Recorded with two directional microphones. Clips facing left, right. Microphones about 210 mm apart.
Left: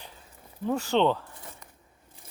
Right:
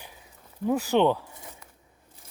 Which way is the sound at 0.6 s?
10° right (ahead or behind).